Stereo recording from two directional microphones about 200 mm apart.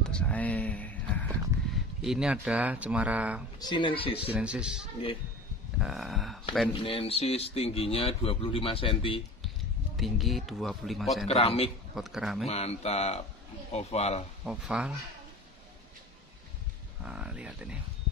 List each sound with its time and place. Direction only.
0.0 s a sound: 5° left (ahead or behind)
2.0 s speech: 5° right (ahead or behind)
3.5 s speech: 20° left (ahead or behind)
4.3 s speech: 5° right (ahead or behind)
6.7 s speech: 30° left (ahead or behind)
9.9 s speech: centre (ahead or behind)
11.2 s speech: 30° left (ahead or behind)
11.9 s speech: centre (ahead or behind)
12.4 s mantra: 30° left (ahead or behind)
14.4 s speech: 5° right (ahead or behind)
17.0 s speech: 5° right (ahead or behind)